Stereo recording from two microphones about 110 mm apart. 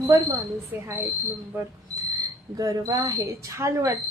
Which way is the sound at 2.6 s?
30° right (ahead or behind).